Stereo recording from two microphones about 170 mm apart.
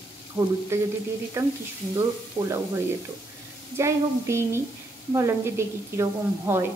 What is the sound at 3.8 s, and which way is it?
Speech, 15° right (ahead or behind).